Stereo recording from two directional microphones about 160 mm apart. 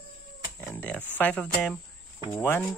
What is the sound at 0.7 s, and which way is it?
Speech, 10° left (ahead or behind).